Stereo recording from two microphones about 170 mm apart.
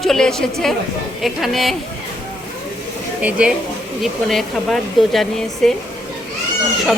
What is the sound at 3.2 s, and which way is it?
Speech, 10° right (ahead or behind).